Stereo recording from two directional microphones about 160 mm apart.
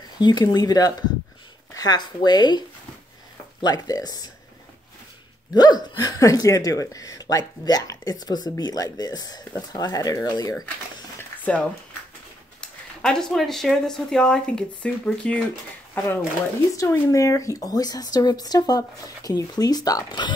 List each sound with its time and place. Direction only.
0.2 s speech: 25° left (ahead or behind)
3.6 s speech: 25° left (ahead or behind)
5.5 s speech: 25° left (ahead or behind)
11.1 s dishes: 10° left (ahead or behind)
12.5 s speech: 5° left (ahead or behind); by 20.3 s 30° left (ahead or behind)